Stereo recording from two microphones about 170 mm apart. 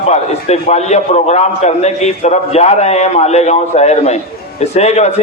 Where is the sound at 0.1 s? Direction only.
40° left (ahead or behind).